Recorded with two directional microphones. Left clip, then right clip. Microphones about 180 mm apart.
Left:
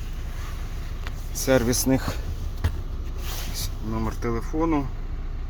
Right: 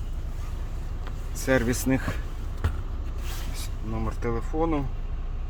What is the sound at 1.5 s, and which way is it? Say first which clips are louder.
Speech: left 3 dB; 10° left (ahead or behind).